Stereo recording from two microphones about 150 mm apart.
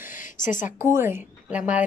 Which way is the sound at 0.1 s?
60° left (ahead or behind).